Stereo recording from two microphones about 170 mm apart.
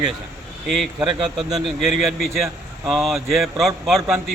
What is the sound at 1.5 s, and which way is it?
A man's voice, centre (ahead or behind).